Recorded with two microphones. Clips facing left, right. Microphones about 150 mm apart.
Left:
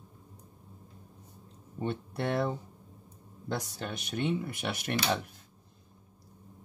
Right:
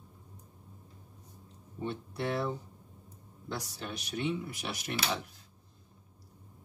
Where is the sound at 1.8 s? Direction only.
55° left (ahead or behind).